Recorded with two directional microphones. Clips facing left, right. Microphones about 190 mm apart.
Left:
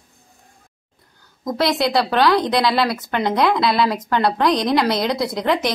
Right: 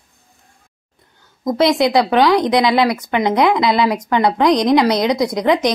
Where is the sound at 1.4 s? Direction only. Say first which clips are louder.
Right 5 dB; 20° right (ahead or behind).